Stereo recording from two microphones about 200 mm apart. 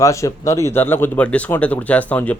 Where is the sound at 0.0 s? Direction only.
15° left (ahead or behind).